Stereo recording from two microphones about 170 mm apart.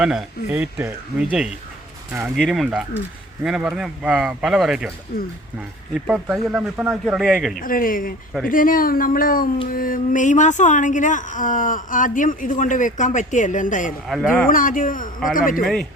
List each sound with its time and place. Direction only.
0.0 s speech: 5° right (ahead or behind)
5.1 s speech: 60° left (ahead or behind)
5.9 s speech: centre (ahead or behind)
7.5 s speech: 55° left (ahead or behind)
14.1 s speech: centre (ahead or behind)
14.4 s speech: 55° left (ahead or behind)
15.6 s speech: centre (ahead or behind)